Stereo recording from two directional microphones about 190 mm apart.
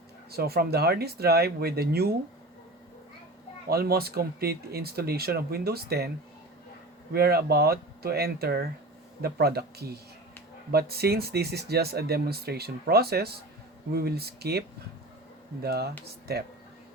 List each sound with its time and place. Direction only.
0.3 s speech: 55° right (ahead or behind)
3.7 s speech: 55° right (ahead or behind)
7.1 s speech: 55° right (ahead or behind)
15.6 s speech: 55° right (ahead or behind)